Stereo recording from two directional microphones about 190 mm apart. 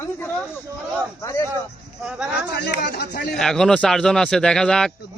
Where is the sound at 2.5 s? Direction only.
60° left (ahead or behind).